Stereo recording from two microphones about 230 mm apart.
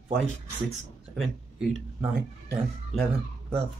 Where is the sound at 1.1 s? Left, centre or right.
Centre.